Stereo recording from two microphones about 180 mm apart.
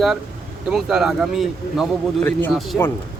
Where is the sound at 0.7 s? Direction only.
5° right (ahead or behind).